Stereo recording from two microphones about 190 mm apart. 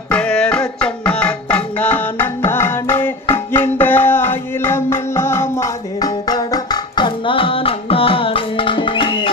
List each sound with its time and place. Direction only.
0.1 s music: 5° left (ahead or behind); by 9.3 s 25° left (ahead or behind)